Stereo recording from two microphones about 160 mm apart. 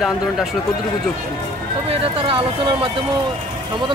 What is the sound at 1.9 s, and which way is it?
Speech, 35° right (ahead or behind).